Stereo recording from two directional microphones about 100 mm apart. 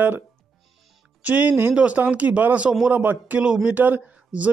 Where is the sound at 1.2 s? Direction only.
15° right (ahead or behind).